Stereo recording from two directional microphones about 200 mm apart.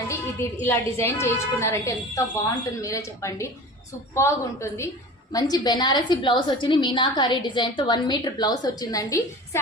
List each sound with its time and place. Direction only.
0.3 s a woman's voice: 10° left (ahead or behind)